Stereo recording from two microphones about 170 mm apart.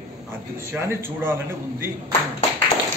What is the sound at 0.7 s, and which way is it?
A man's voice, 15° right (ahead or behind).